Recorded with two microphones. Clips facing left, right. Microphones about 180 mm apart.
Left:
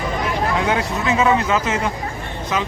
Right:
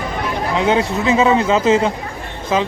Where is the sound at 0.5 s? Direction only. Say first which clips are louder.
Right 4 dB; 25° right (ahead or behind).